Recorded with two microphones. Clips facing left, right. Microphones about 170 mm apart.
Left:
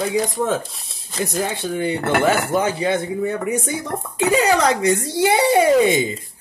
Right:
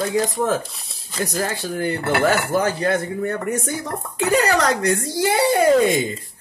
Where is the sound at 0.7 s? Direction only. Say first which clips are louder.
Even; centre (ahead or behind).